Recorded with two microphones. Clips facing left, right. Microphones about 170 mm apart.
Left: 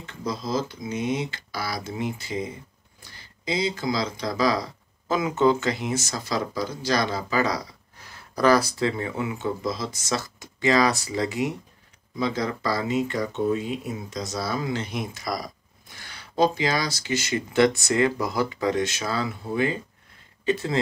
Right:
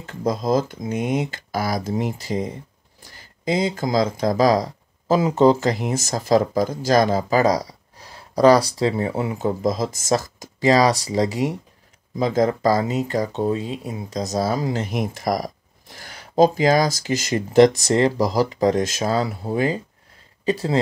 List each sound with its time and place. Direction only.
0.0 s speech: 50° right (ahead or behind)